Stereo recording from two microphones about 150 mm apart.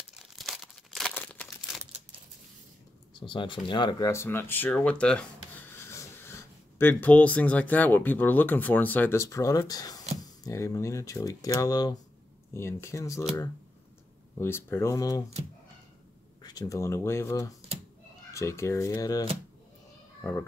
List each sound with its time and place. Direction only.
0.1 s crumpling: centre (ahead or behind)
3.2 s speech: 35° left (ahead or behind)
4.1 s speech: 15° left (ahead or behind)
5.8 s speech: 15° left (ahead or behind)
16.4 s speech: 25° left (ahead or behind)